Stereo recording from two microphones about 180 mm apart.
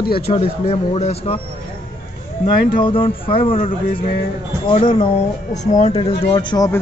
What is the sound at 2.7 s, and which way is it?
Speech, 30° left (ahead or behind).